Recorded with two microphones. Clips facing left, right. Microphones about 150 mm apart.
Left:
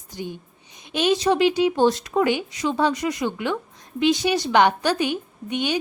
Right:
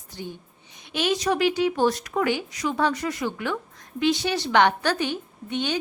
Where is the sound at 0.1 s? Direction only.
15° left (ahead or behind).